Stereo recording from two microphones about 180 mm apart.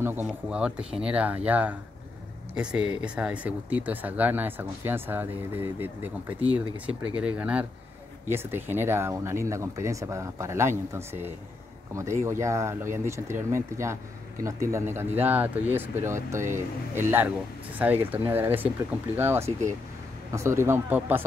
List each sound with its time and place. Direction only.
0.0 s speech: 10° right (ahead or behind)